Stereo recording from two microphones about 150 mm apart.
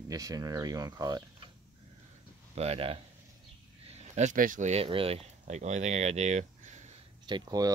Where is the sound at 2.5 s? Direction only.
45° right (ahead or behind).